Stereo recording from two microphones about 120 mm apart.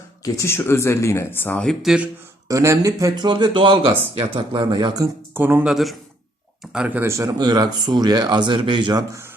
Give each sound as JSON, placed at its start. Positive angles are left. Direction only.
{"t": 0.3, "sound": "speech", "side_deg": 20}
{"t": 1.6, "sound": "speech", "side_deg": -5}
{"t": 2.5, "sound": "speech", "side_deg": -25}
{"t": 3.2, "sound": "speech", "side_deg": -40}
{"t": 5.3, "sound": "speech", "side_deg": -20}
{"t": 5.6, "sound": "speech", "side_deg": 0}
{"t": 7.0, "sound": "speech", "side_deg": -25}